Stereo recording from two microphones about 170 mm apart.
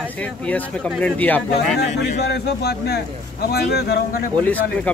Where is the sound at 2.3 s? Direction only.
75° left (ahead or behind).